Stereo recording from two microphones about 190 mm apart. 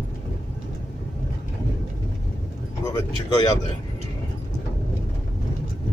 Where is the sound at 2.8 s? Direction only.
20° left (ahead or behind).